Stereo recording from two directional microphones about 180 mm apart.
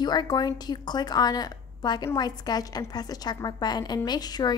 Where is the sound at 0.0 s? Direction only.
25° left (ahead or behind).